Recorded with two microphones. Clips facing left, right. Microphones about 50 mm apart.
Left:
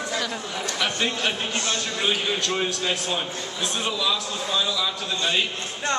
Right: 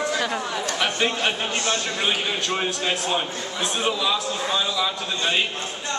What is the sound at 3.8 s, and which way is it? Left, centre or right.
A man's voice, centre.